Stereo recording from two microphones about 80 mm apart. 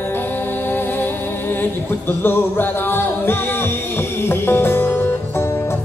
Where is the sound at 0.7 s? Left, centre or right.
Left.